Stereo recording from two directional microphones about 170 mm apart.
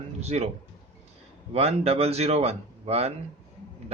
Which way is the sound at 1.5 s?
35° right (ahead or behind).